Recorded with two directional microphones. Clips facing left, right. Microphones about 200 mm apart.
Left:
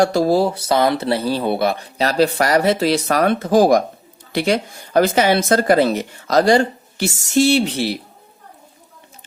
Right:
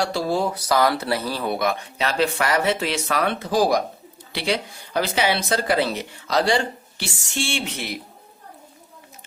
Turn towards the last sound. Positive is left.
turn(degrees=30)  # may be behind; listen again after turning